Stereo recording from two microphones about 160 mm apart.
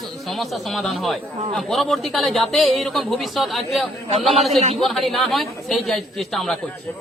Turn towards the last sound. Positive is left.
turn(degrees=0)  # may be behind; listen again after turning